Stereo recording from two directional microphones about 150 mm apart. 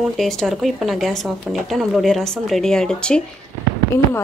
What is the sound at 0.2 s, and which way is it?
Speech, centre (ahead or behind).